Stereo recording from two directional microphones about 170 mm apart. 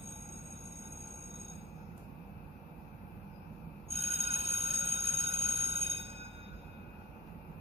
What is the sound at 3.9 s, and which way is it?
Music, 40° right (ahead or behind).